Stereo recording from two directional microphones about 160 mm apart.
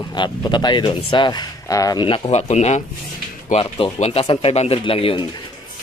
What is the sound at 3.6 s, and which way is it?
Speech, 30° left (ahead or behind).